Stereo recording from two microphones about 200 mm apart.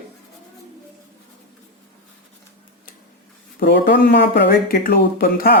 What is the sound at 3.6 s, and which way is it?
Speech, 55° left (ahead or behind).